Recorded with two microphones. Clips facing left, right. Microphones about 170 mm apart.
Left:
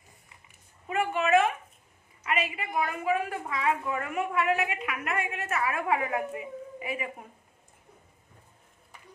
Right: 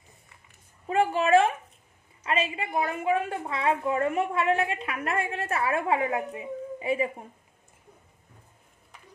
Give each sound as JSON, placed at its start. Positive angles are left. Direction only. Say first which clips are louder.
{"t": 0.8, "sound": "a woman's voice", "louder": "right 4 dB", "side_deg": -30}